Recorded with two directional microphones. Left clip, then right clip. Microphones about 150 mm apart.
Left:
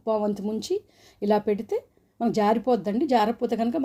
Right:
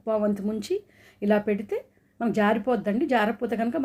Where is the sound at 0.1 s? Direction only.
35° left (ahead or behind).